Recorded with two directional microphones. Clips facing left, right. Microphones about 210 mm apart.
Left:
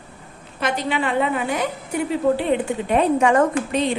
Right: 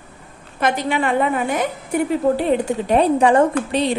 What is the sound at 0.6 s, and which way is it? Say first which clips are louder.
A woman's voice: right 3 dB; 50° right (ahead or behind).